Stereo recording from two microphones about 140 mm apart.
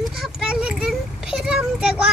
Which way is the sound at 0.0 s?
5° right (ahead or behind).